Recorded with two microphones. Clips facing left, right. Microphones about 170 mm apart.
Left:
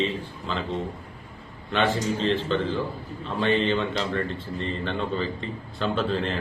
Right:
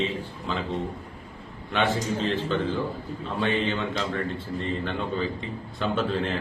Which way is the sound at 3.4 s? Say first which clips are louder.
Left 3 dB; 5° right (ahead or behind).